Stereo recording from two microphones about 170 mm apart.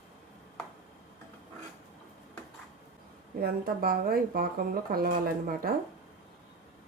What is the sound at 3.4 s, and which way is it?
A woman's voice, 60° right (ahead or behind).